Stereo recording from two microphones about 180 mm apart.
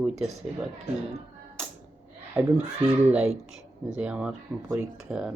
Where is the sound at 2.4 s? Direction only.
15° right (ahead or behind).